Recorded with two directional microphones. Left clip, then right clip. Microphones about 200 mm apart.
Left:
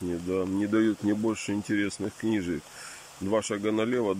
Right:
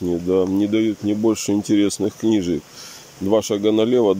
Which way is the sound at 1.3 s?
20° right (ahead or behind).